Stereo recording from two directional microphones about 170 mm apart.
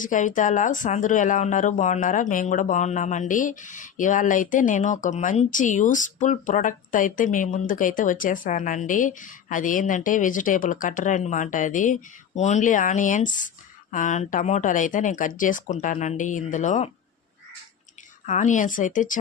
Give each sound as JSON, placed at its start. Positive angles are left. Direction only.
{"t": 0.0, "sound": "speech", "side_deg": 50}
{"t": 18.3, "sound": "speech", "side_deg": 45}